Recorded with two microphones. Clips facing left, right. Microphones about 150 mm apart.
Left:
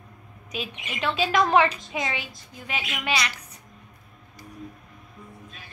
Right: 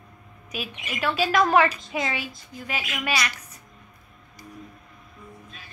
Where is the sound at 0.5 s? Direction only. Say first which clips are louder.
Even; 20° left (ahead or behind).